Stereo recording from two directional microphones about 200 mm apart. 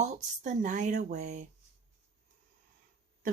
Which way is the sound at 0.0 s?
35° right (ahead or behind).